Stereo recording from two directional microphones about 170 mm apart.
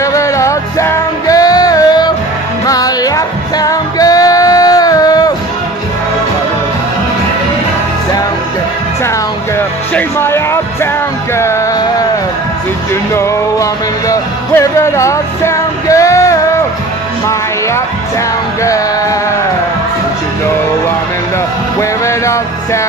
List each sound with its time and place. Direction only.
0.0 s music: 20° left (ahead or behind)
9.9 s music: 15° left (ahead or behind)
13.1 s music: 15° left (ahead or behind)
21.7 s music: 15° left (ahead or behind)